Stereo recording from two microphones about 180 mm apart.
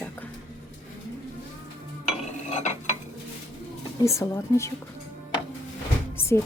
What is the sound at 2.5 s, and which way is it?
Stir, 40° left (ahead or behind).